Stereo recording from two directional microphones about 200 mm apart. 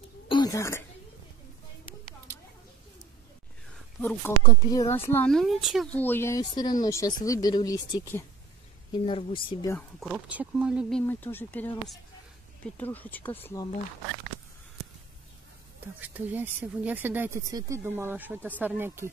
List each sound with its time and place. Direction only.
0.3 s a sound: 20° left (ahead or behind)
4.0 s speech: 10° left (ahead or behind)
4.4 s speech: 20° left (ahead or behind)
9.0 s speech: 25° left (ahead or behind)
9.7 s speech: 5° left (ahead or behind)
16.0 s speech: 10° right (ahead or behind)